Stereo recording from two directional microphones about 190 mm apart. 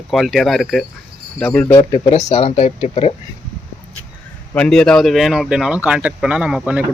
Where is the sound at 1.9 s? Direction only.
35° left (ahead or behind).